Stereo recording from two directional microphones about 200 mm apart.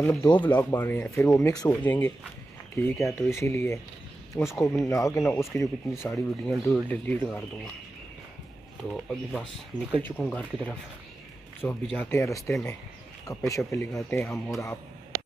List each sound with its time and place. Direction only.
0.1 s speech: 15° left (ahead or behind)
3.0 s speech: centre (ahead or behind)
3.3 s speech: 15° left (ahead or behind)
6.1 s speech: centre (ahead or behind)
9.1 s speech: 5° left (ahead or behind)